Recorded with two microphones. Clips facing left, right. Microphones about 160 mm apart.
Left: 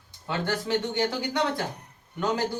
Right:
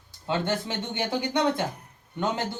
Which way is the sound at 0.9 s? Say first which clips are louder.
Even; 20° right (ahead or behind).